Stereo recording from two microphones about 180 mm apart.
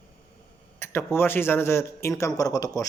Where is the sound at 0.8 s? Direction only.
15° left (ahead or behind).